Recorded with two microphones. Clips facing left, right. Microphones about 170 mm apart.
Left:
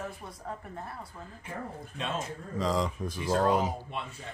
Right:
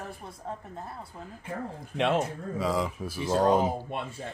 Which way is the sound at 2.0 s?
85° right.